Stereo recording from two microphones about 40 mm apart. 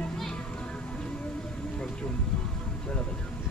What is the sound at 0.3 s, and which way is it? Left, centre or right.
Music, left.